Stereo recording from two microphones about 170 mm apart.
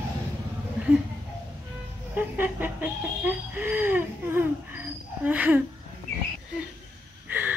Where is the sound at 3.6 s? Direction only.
10° right (ahead or behind).